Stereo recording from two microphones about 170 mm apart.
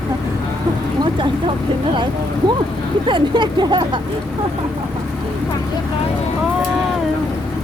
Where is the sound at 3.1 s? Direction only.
25° right (ahead or behind).